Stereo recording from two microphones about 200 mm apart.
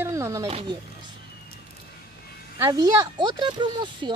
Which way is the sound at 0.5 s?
30° right (ahead or behind).